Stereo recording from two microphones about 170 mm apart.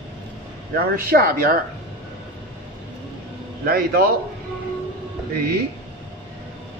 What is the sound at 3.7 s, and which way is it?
Speech, 60° right (ahead or behind).